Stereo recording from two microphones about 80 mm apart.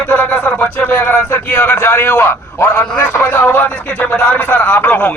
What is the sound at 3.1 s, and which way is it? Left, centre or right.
A man's voice, left.